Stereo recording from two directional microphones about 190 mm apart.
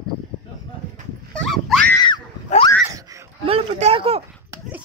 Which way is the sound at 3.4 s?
30° right (ahead or behind).